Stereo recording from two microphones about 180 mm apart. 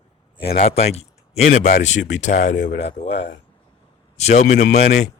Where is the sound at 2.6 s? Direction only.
75° left (ahead or behind).